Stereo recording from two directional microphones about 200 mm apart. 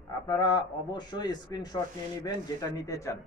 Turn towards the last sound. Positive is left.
turn(degrees=15)  # may be behind; listen again after turning